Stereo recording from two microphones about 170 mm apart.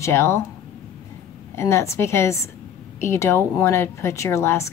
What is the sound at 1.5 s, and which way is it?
A woman's voice, 15° left (ahead or behind).